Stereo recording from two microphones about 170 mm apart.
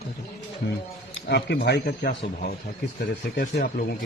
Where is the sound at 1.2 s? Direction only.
75° left (ahead or behind).